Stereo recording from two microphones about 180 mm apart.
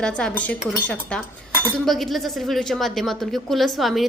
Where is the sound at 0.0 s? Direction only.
5° left (ahead or behind).